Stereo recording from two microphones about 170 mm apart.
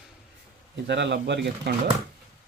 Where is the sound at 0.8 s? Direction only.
90° right.